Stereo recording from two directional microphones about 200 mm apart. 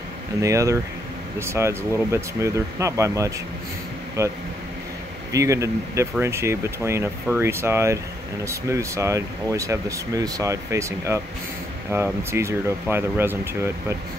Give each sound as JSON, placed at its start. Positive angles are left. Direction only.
{"t": 0.4, "sound": "speech", "side_deg": -15}